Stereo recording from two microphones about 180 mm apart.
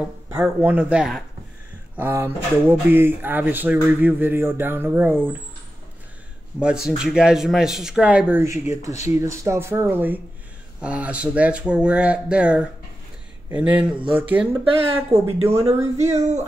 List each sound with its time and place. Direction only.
0.3 s speech: 10° right (ahead or behind)
6.6 s speech: 5° right (ahead or behind)
15.6 s a sound: 40° right (ahead or behind)